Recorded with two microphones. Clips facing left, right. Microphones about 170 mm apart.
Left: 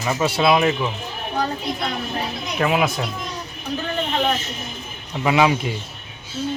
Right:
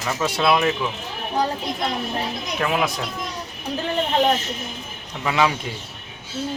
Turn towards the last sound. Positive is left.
turn(degrees=10)  # may be behind; listen again after turning